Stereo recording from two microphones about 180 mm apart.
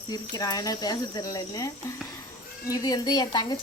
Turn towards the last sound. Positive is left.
turn(degrees=25)  # may be behind; listen again after turning